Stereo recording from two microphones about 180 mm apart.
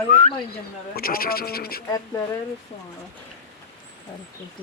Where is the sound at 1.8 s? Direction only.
15° left (ahead or behind).